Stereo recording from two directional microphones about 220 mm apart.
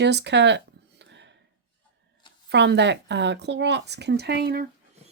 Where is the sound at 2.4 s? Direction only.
50° right (ahead or behind).